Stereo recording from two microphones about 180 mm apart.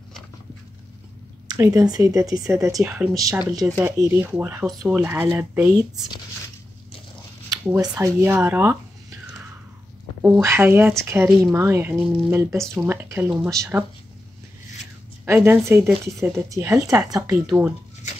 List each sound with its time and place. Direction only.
1.5 s speech: 20° right (ahead or behind)
7.6 s speech: 10° right (ahead or behind)
10.2 s speech: 15° right (ahead or behind)
15.2 s speech: 10° right (ahead or behind)
17.1 s speech: 5° right (ahead or behind)